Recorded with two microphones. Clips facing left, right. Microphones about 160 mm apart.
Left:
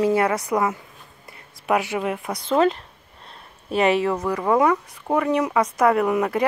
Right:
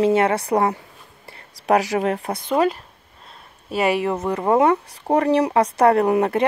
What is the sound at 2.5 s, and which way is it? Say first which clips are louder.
Speech: left 1 dB; 10° right (ahead or behind).